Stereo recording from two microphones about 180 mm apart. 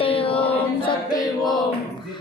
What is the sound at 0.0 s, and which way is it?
Chant, 30° left (ahead or behind).